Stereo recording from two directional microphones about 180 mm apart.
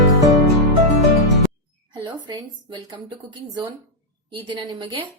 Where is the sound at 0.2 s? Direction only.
20° right (ahead or behind).